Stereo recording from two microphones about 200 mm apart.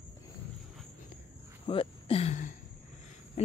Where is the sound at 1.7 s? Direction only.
30° left (ahead or behind).